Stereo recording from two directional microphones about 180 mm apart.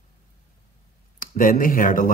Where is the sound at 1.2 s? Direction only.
50° left (ahead or behind).